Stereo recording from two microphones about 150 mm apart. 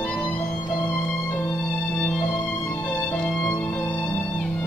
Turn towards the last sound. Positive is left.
turn(degrees=15)  # may be behind; listen again after turning